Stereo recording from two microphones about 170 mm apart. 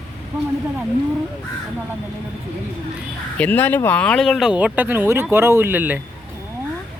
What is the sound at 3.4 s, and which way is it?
Speech, 10° left (ahead or behind).